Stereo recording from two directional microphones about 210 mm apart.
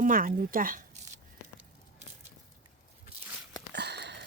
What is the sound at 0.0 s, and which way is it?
Speech, 40° right (ahead or behind).